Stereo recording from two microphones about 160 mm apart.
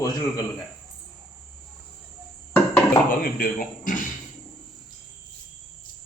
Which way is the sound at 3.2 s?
60° left (ahead or behind).